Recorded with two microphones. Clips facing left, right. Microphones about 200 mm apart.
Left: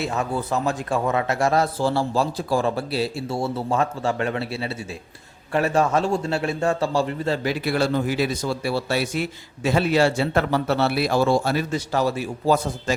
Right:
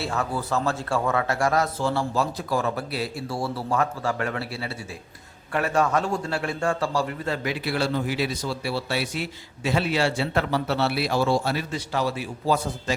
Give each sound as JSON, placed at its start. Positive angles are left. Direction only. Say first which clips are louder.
{"t": 0.0, "sound": "a man's voice", "louder": "left 3 dB", "side_deg": 20}
{"t": 7.5, "sound": "speech", "louder": "left 3 dB", "side_deg": 45}